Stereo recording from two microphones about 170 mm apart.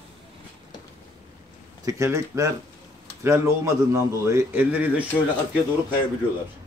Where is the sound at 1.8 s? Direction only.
15° right (ahead or behind).